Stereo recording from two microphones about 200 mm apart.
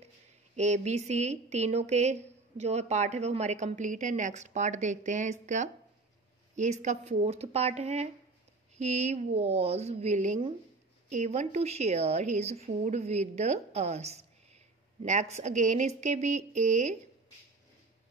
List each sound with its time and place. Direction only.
0.6 s a woman's voice: 35° right (ahead or behind)